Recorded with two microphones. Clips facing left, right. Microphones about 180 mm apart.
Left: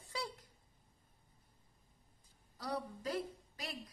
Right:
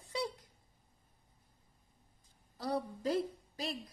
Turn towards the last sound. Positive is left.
turn(degrees=-30)  # may be behind; listen again after turning